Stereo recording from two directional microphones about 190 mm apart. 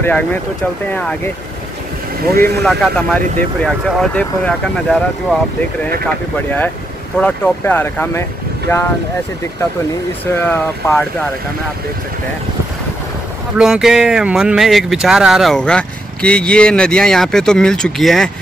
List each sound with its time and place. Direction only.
0.0 s speech: 10° left (ahead or behind)
2.2 s speech: 55° right (ahead or behind)
2.6 s speech: 5° left (ahead or behind)
6.0 s speech: 10° left (ahead or behind)
10.3 s speech: 10° left (ahead or behind)
13.6 s speech: 5° right (ahead or behind)